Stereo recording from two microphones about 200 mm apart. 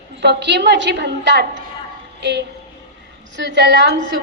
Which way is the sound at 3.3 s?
60° right (ahead or behind).